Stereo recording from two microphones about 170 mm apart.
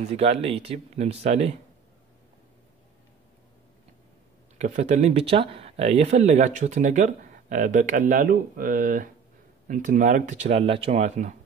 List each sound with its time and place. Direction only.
0.1 s speech: 40° right (ahead or behind)
4.6 s speech: 45° right (ahead or behind)